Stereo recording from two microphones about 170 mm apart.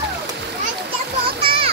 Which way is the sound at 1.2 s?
30° right (ahead or behind).